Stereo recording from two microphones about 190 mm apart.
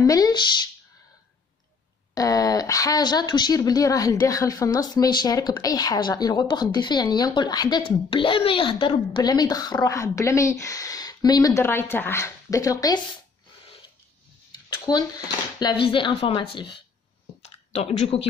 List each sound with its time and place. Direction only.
0.0 s speech: 20° left (ahead or behind)
2.1 s speech: 20° left (ahead or behind)
14.5 s speech: 20° left (ahead or behind)
17.4 s a sound: 35° left (ahead or behind)